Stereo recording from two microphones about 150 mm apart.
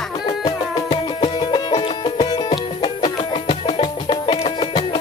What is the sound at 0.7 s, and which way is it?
Music, 35° left (ahead or behind).